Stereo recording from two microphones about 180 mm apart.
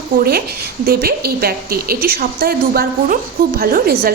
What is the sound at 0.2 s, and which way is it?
A woman's voice, 55° right (ahead or behind).